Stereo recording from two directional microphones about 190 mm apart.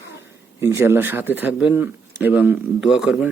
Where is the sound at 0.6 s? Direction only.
15° right (ahead or behind).